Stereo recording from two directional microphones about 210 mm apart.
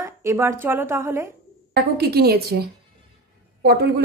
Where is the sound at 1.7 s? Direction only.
50° right (ahead or behind).